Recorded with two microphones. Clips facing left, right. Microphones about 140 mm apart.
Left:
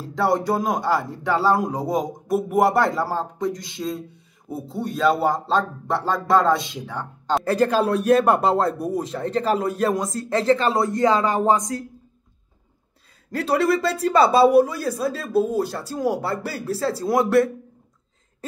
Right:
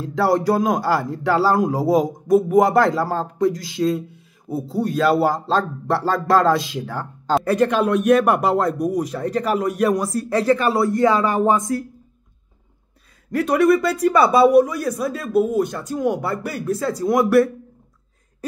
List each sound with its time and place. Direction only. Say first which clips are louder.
0.0 s speech: right 3 dB; centre (ahead or behind)
7.4 s speech: even; 30° left (ahead or behind)
13.3 s speech: right 4 dB; 30° left (ahead or behind)